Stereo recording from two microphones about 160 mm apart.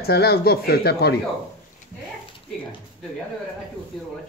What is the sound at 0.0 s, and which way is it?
Speech, 80° left.